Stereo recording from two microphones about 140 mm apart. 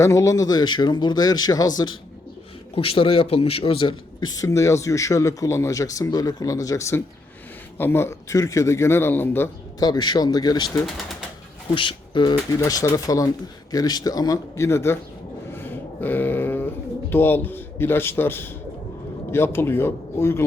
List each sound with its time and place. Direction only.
0.0 s speech: 20° left (ahead or behind)
2.7 s speech: 40° left (ahead or behind); by 9.5 s 15° left (ahead or behind)
9.8 s speech: 30° left (ahead or behind)
11.7 s speech: 35° left (ahead or behind)
12.5 s speech: 25° left (ahead or behind)
15.5 s a sound: 15° left (ahead or behind)
19.3 s speech: 15° left (ahead or behind)